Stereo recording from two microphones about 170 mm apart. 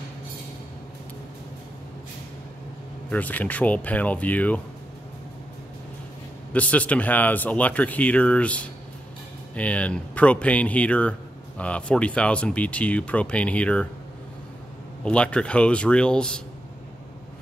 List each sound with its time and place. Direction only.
3.1 s speech: 10° left (ahead or behind)
6.5 s speech: 10° left (ahead or behind)
15.0 s speech: 5° left (ahead or behind)